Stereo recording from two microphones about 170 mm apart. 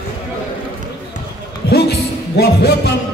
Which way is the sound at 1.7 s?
75° left (ahead or behind).